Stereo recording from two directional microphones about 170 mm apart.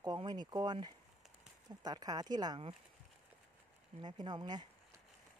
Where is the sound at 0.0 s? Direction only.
25° right (ahead or behind).